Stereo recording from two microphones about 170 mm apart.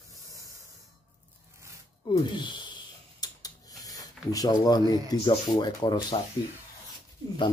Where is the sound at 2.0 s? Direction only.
25° left (ahead or behind).